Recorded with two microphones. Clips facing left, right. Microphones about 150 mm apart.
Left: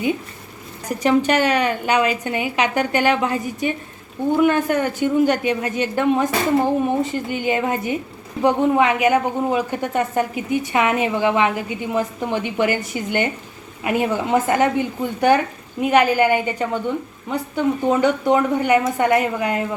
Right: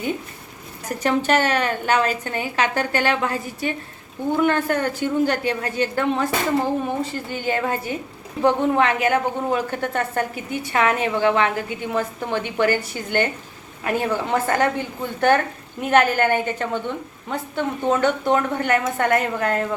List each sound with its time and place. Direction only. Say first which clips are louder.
0.9 s a woman's voice: left 3 dB; 10° left (ahead or behind)